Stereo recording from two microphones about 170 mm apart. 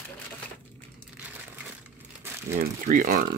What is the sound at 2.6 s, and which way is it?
Speech, 55° right (ahead or behind).